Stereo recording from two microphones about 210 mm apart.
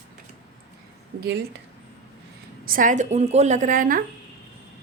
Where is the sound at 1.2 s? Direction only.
50° right (ahead or behind).